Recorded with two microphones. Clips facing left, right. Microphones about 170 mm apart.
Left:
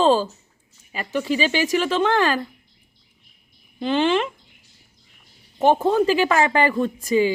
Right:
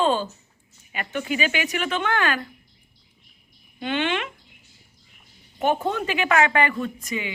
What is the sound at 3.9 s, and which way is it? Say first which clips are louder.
Speech: left 6 dB; 35° left (ahead or behind).